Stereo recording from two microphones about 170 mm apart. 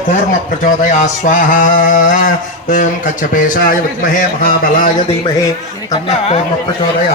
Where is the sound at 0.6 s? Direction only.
50° left (ahead or behind).